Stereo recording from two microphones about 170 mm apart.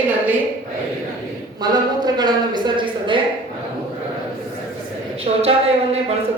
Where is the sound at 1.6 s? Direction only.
25° right (ahead or behind).